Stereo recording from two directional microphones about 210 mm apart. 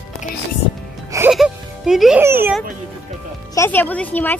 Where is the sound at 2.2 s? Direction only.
10° right (ahead or behind).